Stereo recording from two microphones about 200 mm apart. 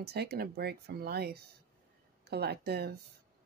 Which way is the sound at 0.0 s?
55° right (ahead or behind).